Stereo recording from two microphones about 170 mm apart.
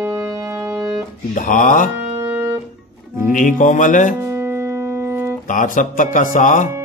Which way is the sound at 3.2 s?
50° left (ahead or behind).